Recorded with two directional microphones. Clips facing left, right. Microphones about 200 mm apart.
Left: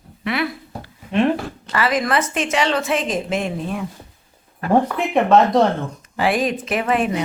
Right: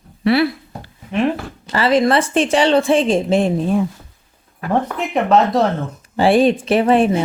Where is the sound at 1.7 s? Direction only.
30° right (ahead or behind).